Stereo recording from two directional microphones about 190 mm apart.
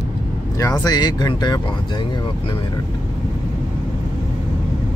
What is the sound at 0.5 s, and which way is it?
Speech, 15° left (ahead or behind).